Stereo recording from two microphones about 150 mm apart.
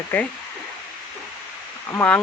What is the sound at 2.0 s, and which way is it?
Speech, 15° left (ahead or behind).